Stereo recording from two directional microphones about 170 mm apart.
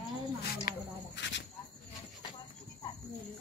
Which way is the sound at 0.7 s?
90° left.